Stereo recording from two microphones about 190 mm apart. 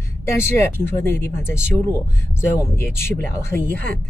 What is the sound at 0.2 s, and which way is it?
Speech, 10° left (ahead or behind).